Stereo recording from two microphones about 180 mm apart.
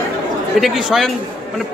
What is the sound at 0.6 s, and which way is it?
Speech, centre (ahead or behind).